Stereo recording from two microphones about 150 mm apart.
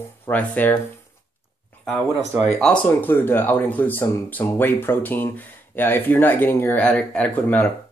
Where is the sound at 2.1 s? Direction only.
20° right (ahead or behind).